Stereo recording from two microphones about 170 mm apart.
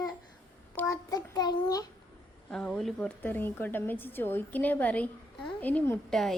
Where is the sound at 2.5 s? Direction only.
5° left (ahead or behind).